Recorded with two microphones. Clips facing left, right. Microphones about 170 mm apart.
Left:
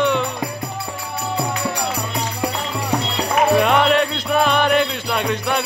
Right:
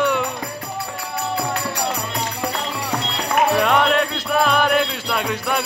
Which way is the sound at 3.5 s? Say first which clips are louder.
Left 2 dB; centre (ahead or behind).